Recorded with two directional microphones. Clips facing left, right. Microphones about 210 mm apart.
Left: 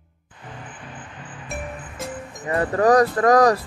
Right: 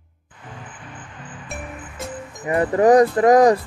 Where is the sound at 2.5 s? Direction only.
20° right (ahead or behind).